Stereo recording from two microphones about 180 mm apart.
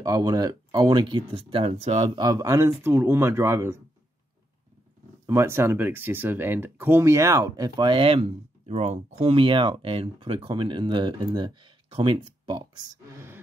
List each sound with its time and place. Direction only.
0.0 s speech: 20° right (ahead or behind)
5.2 s speech: 15° right (ahead or behind)